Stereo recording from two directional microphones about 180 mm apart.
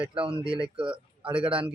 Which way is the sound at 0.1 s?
30° right (ahead or behind).